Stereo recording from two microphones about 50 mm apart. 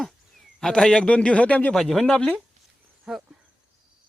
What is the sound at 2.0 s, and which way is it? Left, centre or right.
Speech, centre.